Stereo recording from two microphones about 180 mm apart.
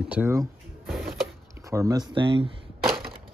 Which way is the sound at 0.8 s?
Centre (ahead or behind).